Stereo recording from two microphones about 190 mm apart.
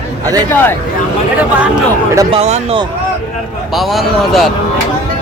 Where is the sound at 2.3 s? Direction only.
30° right (ahead or behind).